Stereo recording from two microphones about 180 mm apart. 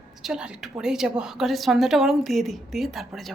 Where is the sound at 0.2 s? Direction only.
5° right (ahead or behind).